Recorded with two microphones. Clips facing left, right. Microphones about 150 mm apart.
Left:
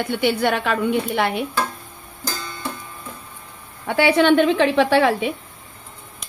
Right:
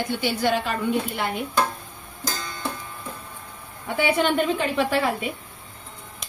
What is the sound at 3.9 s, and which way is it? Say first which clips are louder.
A woman's voice: left 6 dB; 85° left.